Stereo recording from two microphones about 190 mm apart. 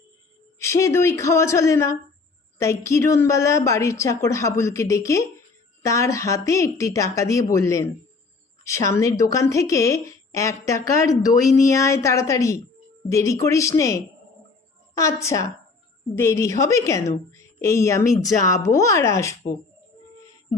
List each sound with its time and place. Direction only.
0.6 s a woman's voice: 15° left (ahead or behind)